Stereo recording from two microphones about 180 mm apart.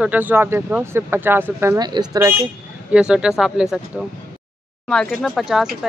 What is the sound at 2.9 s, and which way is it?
Speech, 5° right (ahead or behind).